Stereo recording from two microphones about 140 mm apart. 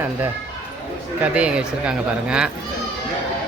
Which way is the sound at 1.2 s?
10° right (ahead or behind).